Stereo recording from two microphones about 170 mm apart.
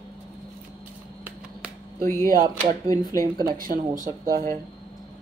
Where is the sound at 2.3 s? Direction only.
50° right (ahead or behind).